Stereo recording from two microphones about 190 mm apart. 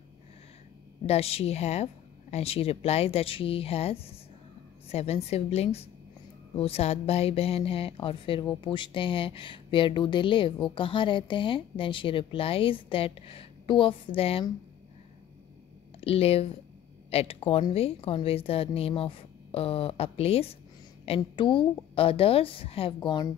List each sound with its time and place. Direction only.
1.0 s a woman's voice: 30° left (ahead or behind)
16.0 s a woman's voice: 30° left (ahead or behind)